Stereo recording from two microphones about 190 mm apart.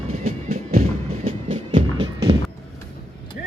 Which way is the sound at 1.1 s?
30° right (ahead or behind).